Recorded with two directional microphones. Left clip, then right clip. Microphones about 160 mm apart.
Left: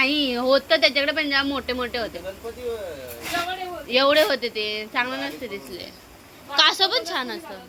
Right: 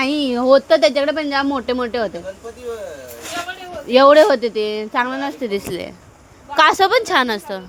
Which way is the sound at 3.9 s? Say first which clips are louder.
Right 9 dB; 90° right.